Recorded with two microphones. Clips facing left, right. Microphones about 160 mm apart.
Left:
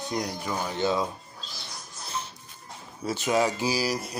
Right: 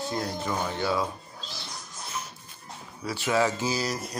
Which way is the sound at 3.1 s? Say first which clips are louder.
Left 1 dB; 20° left (ahead or behind).